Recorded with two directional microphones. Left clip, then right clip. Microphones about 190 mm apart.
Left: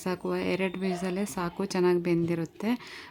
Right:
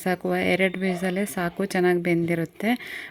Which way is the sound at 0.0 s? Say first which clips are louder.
Right 6 dB; 10° right (ahead or behind).